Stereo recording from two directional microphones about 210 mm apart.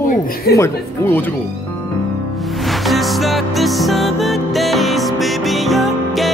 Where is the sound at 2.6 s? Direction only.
Centre (ahead or behind).